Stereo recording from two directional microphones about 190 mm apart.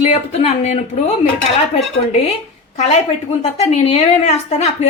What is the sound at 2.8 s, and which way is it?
A woman's voice, 35° left (ahead or behind).